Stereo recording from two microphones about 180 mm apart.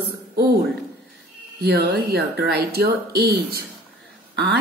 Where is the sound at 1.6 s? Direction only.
65° right (ahead or behind).